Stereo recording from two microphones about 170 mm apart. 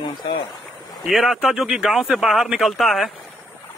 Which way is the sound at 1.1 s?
Centre (ahead or behind).